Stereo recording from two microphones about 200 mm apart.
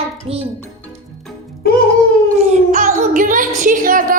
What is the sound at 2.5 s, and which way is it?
Speech, 40° right (ahead or behind).